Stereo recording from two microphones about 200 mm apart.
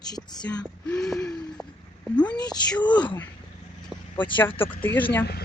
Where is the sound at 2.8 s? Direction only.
20° left (ahead or behind).